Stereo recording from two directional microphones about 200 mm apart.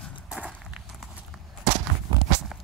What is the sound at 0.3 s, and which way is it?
Walk, 5° right (ahead or behind).